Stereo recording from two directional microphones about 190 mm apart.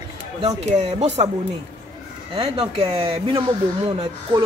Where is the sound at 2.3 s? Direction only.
30° right (ahead or behind).